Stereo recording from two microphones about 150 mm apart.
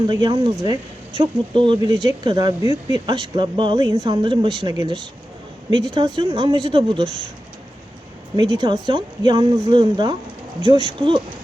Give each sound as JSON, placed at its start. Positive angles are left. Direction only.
{"t": 0.1, "sound": "speech", "side_deg": -30}
{"t": 8.4, "sound": "speech", "side_deg": -25}